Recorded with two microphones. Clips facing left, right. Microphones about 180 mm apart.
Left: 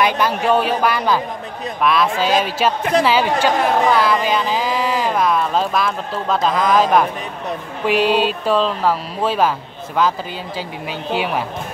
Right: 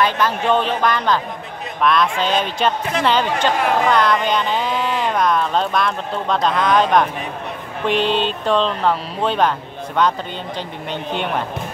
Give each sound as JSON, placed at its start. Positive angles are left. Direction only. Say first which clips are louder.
{"t": 0.0, "sound": "speech", "louder": "left 1 dB", "side_deg": 10}
{"t": 10.9, "sound": "speech", "louder": "left 2 dB", "side_deg": 5}